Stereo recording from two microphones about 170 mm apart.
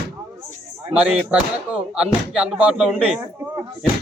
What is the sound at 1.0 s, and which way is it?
Speech, 10° right (ahead or behind).